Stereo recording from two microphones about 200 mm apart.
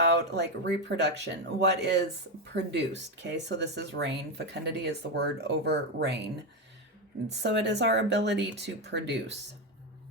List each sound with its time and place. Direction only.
0.0 s speech: 60° right (ahead or behind)
7.3 s speech: 60° right (ahead or behind)